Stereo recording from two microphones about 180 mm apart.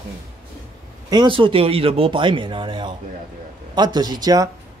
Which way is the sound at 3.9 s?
20° right (ahead or behind).